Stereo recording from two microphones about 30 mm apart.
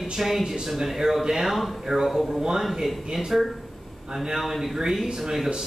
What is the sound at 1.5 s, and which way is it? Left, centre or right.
Speech, centre.